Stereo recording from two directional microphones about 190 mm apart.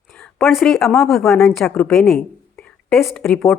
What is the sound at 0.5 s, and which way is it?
A woman's voice, centre (ahead or behind).